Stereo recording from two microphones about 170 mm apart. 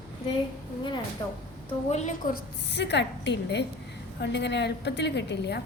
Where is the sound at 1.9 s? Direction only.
45° left (ahead or behind).